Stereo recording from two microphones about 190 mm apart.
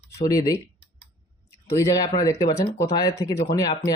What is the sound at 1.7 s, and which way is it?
Speech, 15° left (ahead or behind).